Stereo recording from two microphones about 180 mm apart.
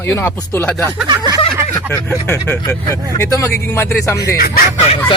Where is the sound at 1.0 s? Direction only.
20° right (ahead or behind).